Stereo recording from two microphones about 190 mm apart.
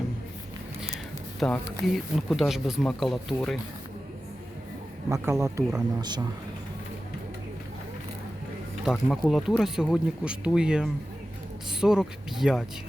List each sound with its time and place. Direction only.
1.4 s speech: centre (ahead or behind)
5.0 s a man's voice: 15° right (ahead or behind)
8.9 s speech: centre (ahead or behind)